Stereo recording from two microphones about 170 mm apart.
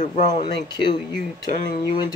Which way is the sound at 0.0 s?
45° left (ahead or behind).